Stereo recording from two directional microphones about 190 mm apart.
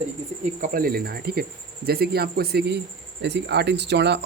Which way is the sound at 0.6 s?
50° right (ahead or behind).